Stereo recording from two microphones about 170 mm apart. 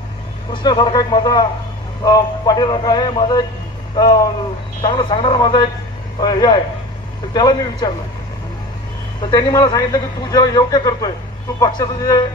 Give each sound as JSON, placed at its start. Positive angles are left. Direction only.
{"t": 0.5, "sound": "a man's voice", "side_deg": 30}
{"t": 9.3, "sound": "a man's voice", "side_deg": 20}